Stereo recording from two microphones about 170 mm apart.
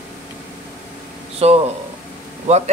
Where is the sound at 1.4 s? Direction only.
40° right (ahead or behind).